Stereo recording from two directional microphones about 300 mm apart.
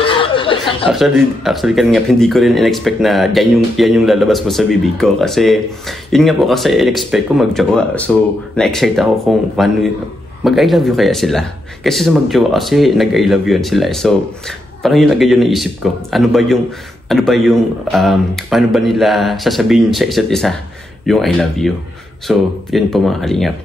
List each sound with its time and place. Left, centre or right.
0.0 s chuckle: centre
0.9 s speech: centre